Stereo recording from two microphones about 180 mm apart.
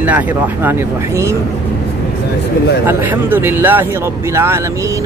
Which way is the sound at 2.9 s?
10° right (ahead or behind).